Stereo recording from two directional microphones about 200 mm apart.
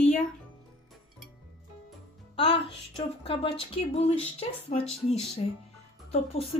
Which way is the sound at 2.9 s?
30° left (ahead or behind).